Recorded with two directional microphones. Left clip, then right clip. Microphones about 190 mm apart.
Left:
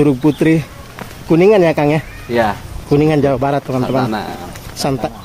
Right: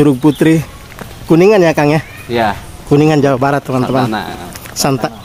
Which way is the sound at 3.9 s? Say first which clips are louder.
Right 2 dB; 50° right (ahead or behind).